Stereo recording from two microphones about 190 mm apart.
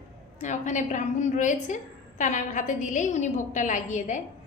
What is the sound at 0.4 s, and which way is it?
A woman's voice, 40° left (ahead or behind).